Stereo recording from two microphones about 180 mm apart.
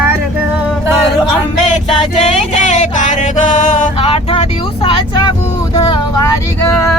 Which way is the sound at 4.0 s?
30° left (ahead or behind).